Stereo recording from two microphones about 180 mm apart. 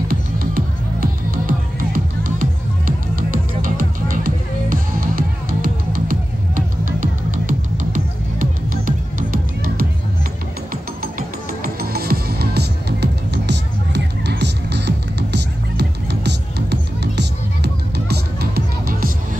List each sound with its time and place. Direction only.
0.1 s music: 55° right (ahead or behind)
11.0 s music: 55° right (ahead or behind)